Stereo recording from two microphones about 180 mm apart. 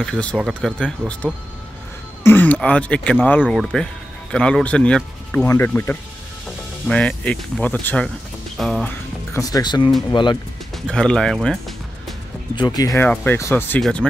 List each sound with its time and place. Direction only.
0.0 s speech: 5° left (ahead or behind)
9.3 s speech: 20° left (ahead or behind)
10.9 s speech: 5° left (ahead or behind)
12.5 s speech: 20° left (ahead or behind); by 14.0 s 5° left (ahead or behind)